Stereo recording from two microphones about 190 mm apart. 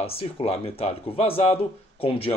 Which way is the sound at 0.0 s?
30° left (ahead or behind).